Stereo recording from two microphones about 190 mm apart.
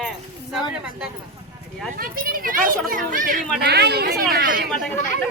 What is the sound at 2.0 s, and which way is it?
A child's voice, 50° right (ahead or behind).